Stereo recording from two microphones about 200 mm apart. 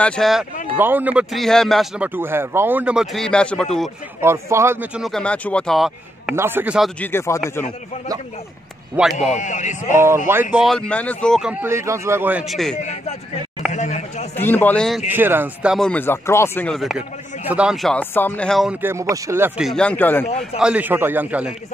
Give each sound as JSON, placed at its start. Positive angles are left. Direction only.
{"t": 0.0, "sound": "speech", "side_deg": 5}
{"t": 4.2, "sound": "a man's voice", "side_deg": -15}
{"t": 5.0, "sound": "speech", "side_deg": 5}
{"t": 6.3, "sound": "a man's voice", "side_deg": -10}
{"t": 7.0, "sound": "speech", "side_deg": 10}
{"t": 9.2, "sound": "speech", "side_deg": 35}
{"t": 9.8, "sound": "speech", "side_deg": -10}
{"t": 11.6, "sound": "a man's voice", "side_deg": -15}
{"t": 12.7, "sound": "speech", "side_deg": 35}
{"t": 13.7, "sound": "a sound", "side_deg": 35}
{"t": 14.3, "sound": "speech", "side_deg": 10}
{"t": 17.9, "sound": "speech", "side_deg": 10}
{"t": 20.5, "sound": "a man's voice", "side_deg": -5}